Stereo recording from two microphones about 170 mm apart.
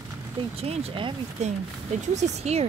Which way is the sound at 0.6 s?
35° right (ahead or behind).